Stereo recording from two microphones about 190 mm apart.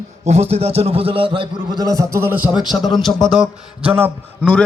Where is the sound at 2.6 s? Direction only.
Centre (ahead or behind).